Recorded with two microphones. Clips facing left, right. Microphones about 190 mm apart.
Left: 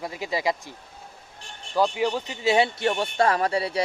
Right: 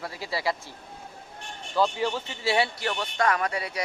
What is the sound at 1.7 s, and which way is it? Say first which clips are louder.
Speech: left 2 dB; 15° left (ahead or behind).